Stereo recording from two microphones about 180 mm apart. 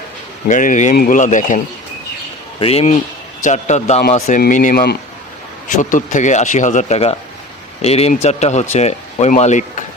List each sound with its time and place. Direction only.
0.4 s speech: 45° left (ahead or behind)
2.6 s speech: 35° left (ahead or behind); by 4.9 s 60° left (ahead or behind)
5.7 s speech: 45° left (ahead or behind)